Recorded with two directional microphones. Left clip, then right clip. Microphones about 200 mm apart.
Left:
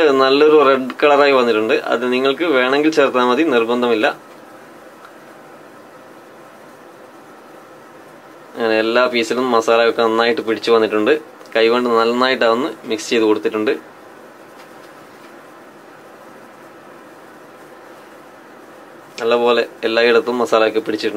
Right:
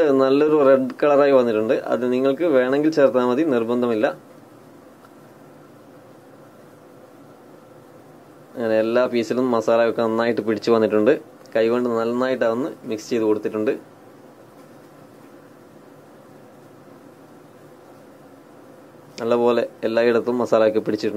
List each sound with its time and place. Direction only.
0.0 s speech: 15° right (ahead or behind)
8.5 s speech: 15° right (ahead or behind)
19.1 s speech: 25° right (ahead or behind)